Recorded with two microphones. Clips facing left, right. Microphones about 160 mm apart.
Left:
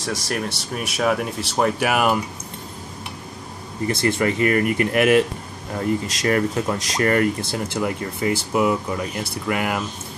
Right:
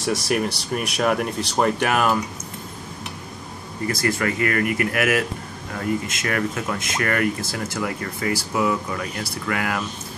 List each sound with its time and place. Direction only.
0.0 s speech: centre (ahead or behind)
3.8 s speech: 25° left (ahead or behind)